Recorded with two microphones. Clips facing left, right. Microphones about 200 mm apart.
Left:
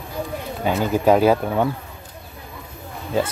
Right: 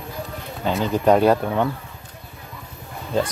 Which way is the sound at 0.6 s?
10° left (ahead or behind).